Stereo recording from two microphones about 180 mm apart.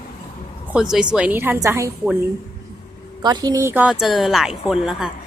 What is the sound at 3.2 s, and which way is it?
A woman's voice, 20° right (ahead or behind).